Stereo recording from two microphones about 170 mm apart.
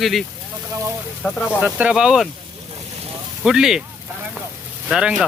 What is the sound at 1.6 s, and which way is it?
Speech, 10° right (ahead or behind).